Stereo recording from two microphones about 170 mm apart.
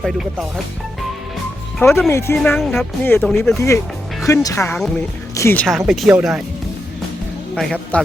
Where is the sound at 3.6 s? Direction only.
15° left (ahead or behind).